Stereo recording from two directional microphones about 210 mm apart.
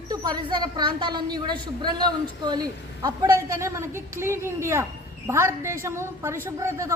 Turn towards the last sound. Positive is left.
turn(degrees=-15)  # may be behind; listen again after turning